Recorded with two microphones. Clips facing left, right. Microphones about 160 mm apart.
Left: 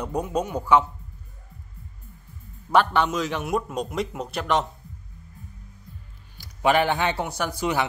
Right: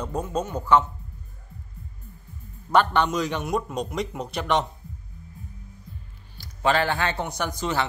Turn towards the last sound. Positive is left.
turn(degrees=10)  # may be behind; listen again after turning